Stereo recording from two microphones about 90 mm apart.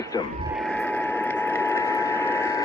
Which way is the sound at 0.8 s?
20° left (ahead or behind).